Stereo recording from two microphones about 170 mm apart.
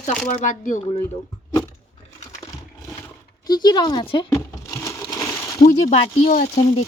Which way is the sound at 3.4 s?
25° left (ahead or behind).